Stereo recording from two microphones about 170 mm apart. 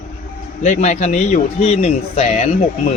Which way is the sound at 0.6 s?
45° left (ahead or behind).